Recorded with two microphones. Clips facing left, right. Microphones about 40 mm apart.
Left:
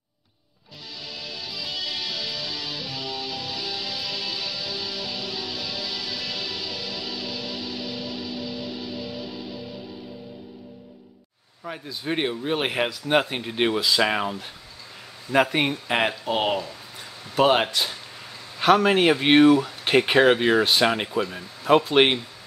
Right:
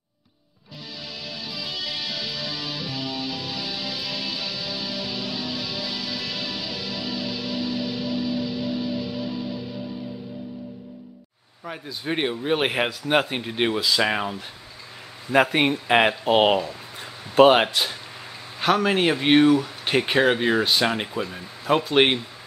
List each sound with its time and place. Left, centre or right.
1.2 s music: centre
11.6 s speech: centre
15.3 s speech: centre
16.3 s speech: right; by 17.9 s centre
18.6 s a man's voice: centre